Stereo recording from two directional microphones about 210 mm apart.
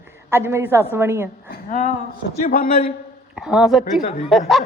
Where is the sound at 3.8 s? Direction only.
35° left (ahead or behind).